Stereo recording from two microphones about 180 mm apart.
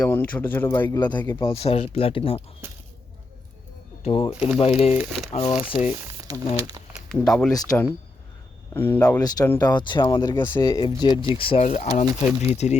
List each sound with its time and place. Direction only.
0.0 s speech: 10° left (ahead or behind)
1.4 s speech: 30° left (ahead or behind)
4.0 s speech: 30° left (ahead or behind)
4.4 s speech: centre (ahead or behind)
4.6 s speech: 35° left (ahead or behind)
6.9 s speech: centre (ahead or behind)
7.5 s speech: 15° left (ahead or behind)
9.8 s speech: 25° left (ahead or behind)
12.0 s speech: 15° right (ahead or behind)
12.5 s speech: 40° left (ahead or behind)